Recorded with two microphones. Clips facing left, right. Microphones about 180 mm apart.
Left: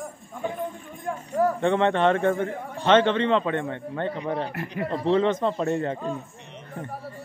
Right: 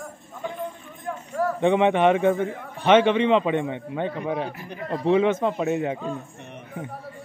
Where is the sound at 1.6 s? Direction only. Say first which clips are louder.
Right 6 dB; 15° right (ahead or behind).